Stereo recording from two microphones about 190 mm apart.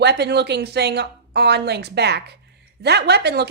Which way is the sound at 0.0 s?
60° right (ahead or behind).